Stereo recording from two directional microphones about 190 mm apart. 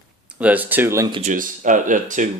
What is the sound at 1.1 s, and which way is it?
Speech, 40° right (ahead or behind).